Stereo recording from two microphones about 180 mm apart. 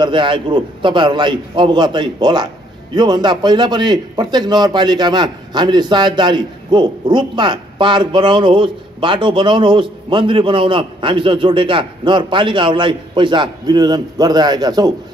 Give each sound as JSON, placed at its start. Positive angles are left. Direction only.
{"t": 0.0, "sound": "a man's voice", "side_deg": -25}